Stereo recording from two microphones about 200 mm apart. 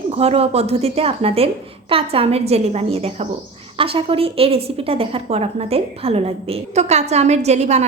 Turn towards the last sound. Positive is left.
turn(degrees=-35)  # may be behind; listen again after turning